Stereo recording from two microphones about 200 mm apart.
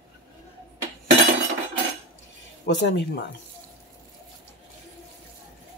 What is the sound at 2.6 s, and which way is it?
Speech, 60° left (ahead or behind).